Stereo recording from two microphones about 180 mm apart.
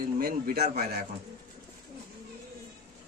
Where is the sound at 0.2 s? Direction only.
55° right (ahead or behind).